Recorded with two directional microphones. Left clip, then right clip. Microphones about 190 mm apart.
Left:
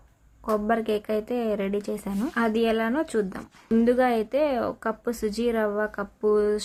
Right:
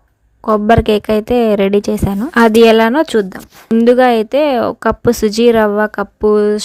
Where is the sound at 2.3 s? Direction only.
55° right (ahead or behind).